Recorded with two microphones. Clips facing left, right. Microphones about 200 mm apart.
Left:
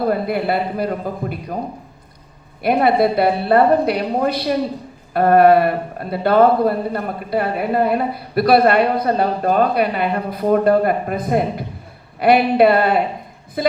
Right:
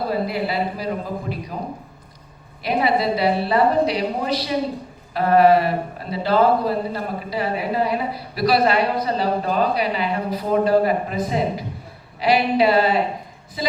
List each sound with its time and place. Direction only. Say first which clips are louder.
0.1 s a man's voice: left 4 dB; 55° left (ahead or behind)
2.6 s a man's voice: left 5 dB; 55° left (ahead or behind)